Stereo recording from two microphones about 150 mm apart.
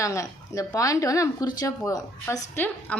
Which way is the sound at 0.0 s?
20° left (ahead or behind).